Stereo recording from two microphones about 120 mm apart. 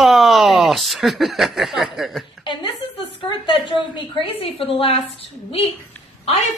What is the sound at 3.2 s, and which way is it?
A woman's voice, 45° left (ahead or behind).